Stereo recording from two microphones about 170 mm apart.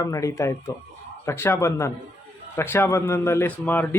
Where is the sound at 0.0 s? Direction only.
20° left (ahead or behind).